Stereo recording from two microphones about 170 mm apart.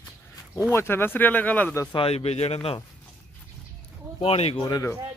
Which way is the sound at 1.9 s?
35° left (ahead or behind).